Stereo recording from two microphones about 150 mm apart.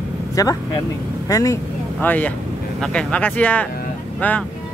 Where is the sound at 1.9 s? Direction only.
10° left (ahead or behind).